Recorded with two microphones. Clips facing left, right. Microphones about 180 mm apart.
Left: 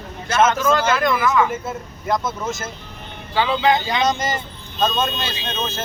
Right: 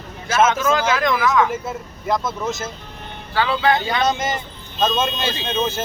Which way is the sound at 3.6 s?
20° left (ahead or behind).